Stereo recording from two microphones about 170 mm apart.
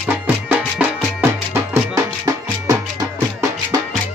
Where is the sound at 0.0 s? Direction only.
10° right (ahead or behind).